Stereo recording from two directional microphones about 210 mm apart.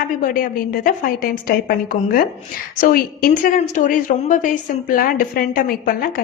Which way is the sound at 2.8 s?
40° left (ahead or behind).